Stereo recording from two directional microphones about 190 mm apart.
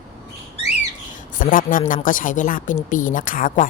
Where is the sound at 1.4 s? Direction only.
45° left (ahead or behind).